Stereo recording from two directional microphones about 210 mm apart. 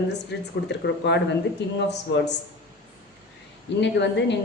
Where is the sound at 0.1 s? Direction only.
55° left (ahead or behind).